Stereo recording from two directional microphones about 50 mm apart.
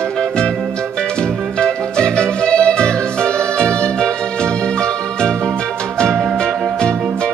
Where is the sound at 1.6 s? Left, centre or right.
Centre.